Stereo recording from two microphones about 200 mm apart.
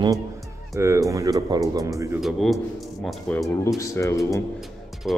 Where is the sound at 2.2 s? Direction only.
Centre (ahead or behind).